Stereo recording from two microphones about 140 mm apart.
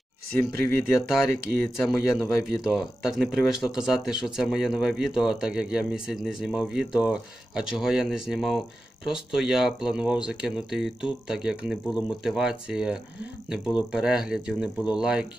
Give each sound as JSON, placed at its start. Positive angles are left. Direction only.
{"t": 0.4, "sound": "speech", "side_deg": -90}
{"t": 1.6, "sound": "speech", "side_deg": 0}